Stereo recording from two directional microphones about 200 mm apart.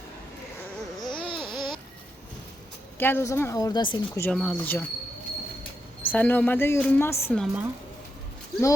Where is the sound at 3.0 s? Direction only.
10° left (ahead or behind).